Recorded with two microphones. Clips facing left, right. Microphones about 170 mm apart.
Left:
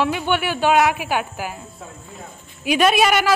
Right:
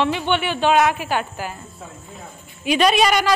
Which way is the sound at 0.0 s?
5° left (ahead or behind).